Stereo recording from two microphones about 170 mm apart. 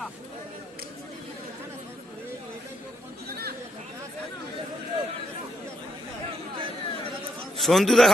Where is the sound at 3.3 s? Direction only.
65° right (ahead or behind).